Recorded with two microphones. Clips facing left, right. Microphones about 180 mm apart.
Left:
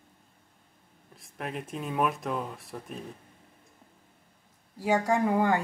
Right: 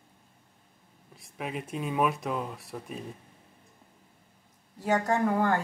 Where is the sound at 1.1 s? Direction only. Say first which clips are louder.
Right 1 dB; centre (ahead or behind).